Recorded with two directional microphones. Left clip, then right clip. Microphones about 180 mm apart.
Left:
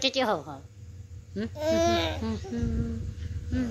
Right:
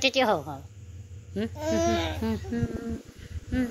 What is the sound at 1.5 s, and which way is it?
Speech, 20° left (ahead or behind).